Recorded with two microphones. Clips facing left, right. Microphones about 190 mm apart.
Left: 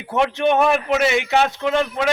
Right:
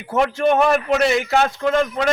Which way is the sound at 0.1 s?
Centre (ahead or behind).